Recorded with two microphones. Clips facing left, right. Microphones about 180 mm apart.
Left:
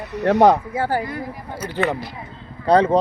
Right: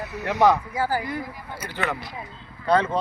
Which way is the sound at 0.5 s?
30° left (ahead or behind).